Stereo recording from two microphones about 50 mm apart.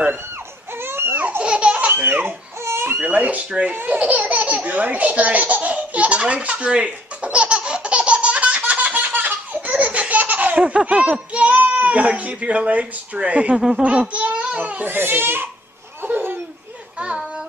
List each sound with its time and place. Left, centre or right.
0.8 s baby cry: right
1.4 s laughter: right
1.9 s speech: right
2.6 s crying: right
3.0 s speech: right
3.8 s baby laughter: right
10.6 s a child's voice: right
14.9 s a child's voice: right
16.0 s laughter: right